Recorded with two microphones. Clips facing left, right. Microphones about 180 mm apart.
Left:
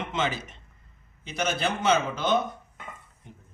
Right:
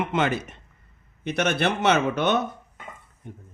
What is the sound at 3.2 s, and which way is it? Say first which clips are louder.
Speech: right 8 dB; 55° right (ahead or behind).